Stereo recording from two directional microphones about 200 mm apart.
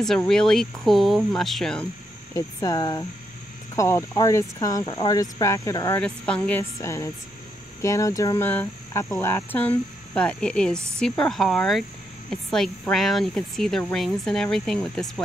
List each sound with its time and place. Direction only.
0.0 s speech: centre (ahead or behind)
2.3 s speech: 20° left (ahead or behind)
5.9 s speech: 5° left (ahead or behind)